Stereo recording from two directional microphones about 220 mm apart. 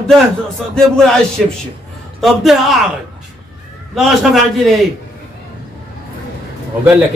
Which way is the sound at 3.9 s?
Centre (ahead or behind).